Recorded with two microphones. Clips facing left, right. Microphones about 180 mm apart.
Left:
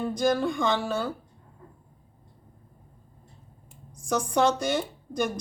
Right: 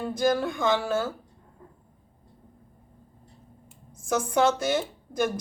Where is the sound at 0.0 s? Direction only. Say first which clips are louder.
Even; 5° right (ahead or behind).